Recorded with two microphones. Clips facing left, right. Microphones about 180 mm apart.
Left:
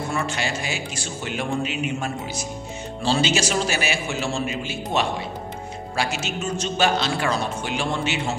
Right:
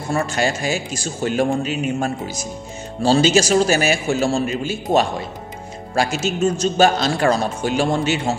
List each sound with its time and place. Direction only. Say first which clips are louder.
0.1 s a man's voice: right 10 dB; 45° right (ahead or behind)